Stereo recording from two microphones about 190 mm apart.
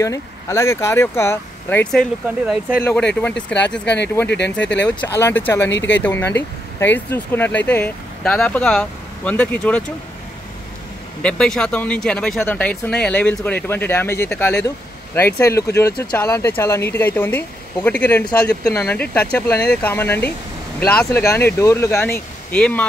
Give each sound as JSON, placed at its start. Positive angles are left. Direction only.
{"t": 0.0, "sound": "speech", "side_deg": 15}
{"t": 2.2, "sound": "speech", "side_deg": -5}
{"t": 2.8, "sound": "speech", "side_deg": 5}
{"t": 3.8, "sound": "speech", "side_deg": 65}
{"t": 4.8, "sound": "speech", "side_deg": 10}
{"t": 5.7, "sound": "speech", "side_deg": 75}
{"t": 6.0, "sound": "speech", "side_deg": 10}
{"t": 11.2, "sound": "speech", "side_deg": 5}